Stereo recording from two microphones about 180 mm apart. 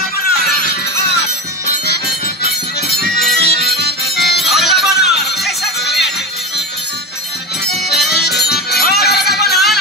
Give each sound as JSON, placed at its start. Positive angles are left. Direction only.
{"t": 0.3, "sound": "music", "side_deg": 60}
{"t": 3.3, "sound": "music", "side_deg": 60}
{"t": 4.4, "sound": "music", "side_deg": 0}
{"t": 7.7, "sound": "music", "side_deg": 0}
{"t": 8.1, "sound": "music", "side_deg": 60}